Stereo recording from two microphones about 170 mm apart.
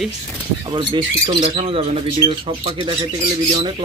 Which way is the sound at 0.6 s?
30° right (ahead or behind).